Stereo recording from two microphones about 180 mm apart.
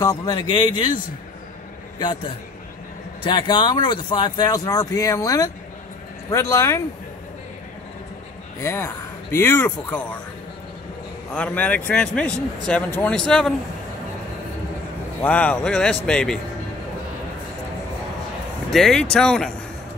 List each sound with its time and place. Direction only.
0.0 s speech: 20° left (ahead or behind)
2.0 s speech: 25° left (ahead or behind)
8.6 s speech: 15° left (ahead or behind)
11.3 s speech: 5° left (ahead or behind)
15.2 s speech: 5° left (ahead or behind)
18.7 s speech: centre (ahead or behind)